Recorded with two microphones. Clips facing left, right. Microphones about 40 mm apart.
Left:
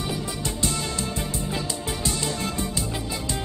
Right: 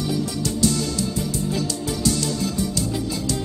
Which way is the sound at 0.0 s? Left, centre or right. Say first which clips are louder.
Right 5 dB; left.